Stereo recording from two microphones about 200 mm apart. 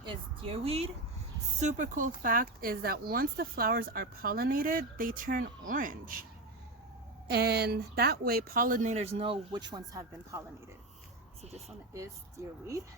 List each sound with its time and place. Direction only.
0.0 s speech: 25° right (ahead or behind)
1.6 s speech: 40° right (ahead or behind)
7.3 s speech: 55° right (ahead or behind); by 10.4 s 15° right (ahead or behind)
11.9 s speech: 15° right (ahead or behind)